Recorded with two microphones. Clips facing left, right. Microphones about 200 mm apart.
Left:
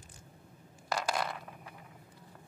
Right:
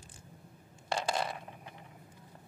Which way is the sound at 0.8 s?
25° right (ahead or behind).